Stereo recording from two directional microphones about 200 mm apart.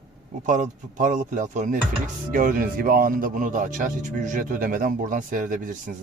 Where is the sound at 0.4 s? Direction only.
40° right (ahead or behind).